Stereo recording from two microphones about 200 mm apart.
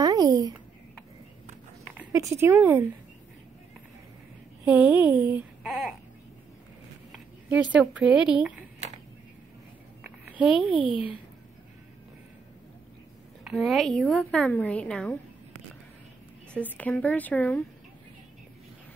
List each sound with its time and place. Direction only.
0.0 s a sound: 20° right (ahead or behind)
2.0 s speech: 15° right (ahead or behind)
4.6 s a woman's voice: 5° right (ahead or behind)
7.1 s a sound: 5° right (ahead or behind)
7.7 s a woman's voice: 5° right (ahead or behind)
10.3 s a woman's voice: 5° right (ahead or behind)
13.4 s a woman's voice: centre (ahead or behind)
16.5 s speech: 5° left (ahead or behind)